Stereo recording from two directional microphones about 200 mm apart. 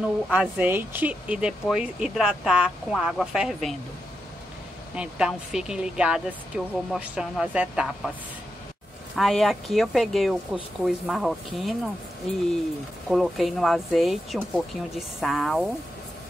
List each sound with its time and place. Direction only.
0.3 s speech: 5° right (ahead or behind)
4.9 s speech: 5° right (ahead or behind)
9.1 s speech: centre (ahead or behind)
13.1 s speech: centre (ahead or behind)